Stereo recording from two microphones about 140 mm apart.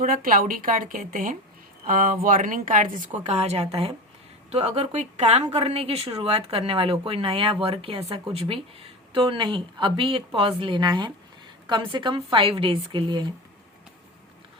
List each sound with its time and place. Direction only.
0.0 s speech: 80° right
1.9 s a woman's voice: 80° right; by 13.2 s 35° right (ahead or behind)